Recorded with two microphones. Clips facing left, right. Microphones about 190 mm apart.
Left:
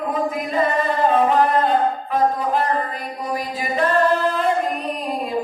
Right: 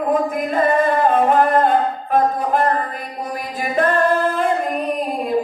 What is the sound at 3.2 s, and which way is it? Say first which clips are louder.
Mantra: left 1 dB; 50° right (ahead or behind).